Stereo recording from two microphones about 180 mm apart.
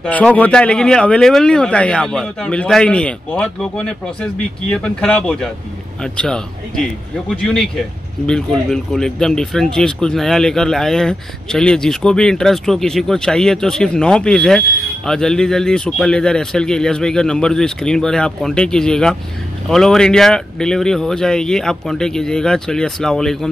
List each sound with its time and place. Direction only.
0.0 s speech: 5° left (ahead or behind)